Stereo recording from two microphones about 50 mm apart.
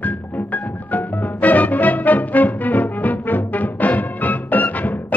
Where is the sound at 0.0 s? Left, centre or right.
Left.